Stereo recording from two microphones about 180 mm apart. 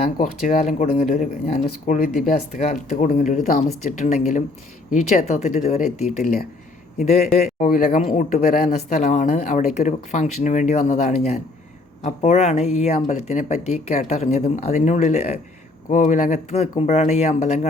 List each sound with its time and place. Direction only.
0.2 s speech: 45° left (ahead or behind)